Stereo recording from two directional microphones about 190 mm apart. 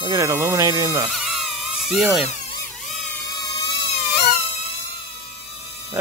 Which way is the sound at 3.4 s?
20° left (ahead or behind).